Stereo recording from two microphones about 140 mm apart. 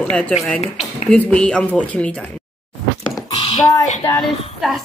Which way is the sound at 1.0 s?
5° left (ahead or behind).